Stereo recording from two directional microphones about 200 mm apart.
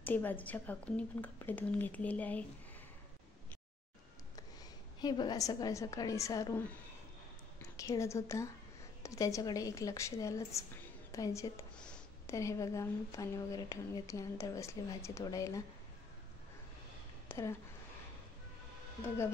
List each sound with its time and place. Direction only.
0.0 s speech: 10° left (ahead or behind)
5.0 s speech: 20° left (ahead or behind)
7.7 s a woman's voice: 15° left (ahead or behind)
11.8 s a sound: 5° left (ahead or behind)
12.4 s speech: 15° left (ahead or behind)
17.3 s speech: 15° left (ahead or behind)